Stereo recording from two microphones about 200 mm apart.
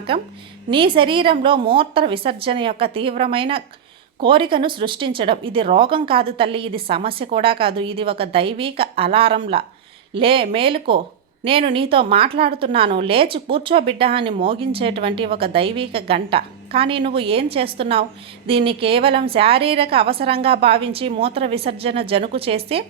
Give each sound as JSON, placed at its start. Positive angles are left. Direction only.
{"t": 0.1, "sound": "speech", "side_deg": -25}